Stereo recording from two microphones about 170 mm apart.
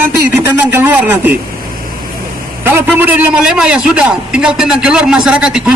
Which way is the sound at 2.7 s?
10° right (ahead or behind).